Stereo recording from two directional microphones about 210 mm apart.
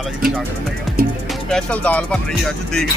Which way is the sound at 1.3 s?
Centre (ahead or behind).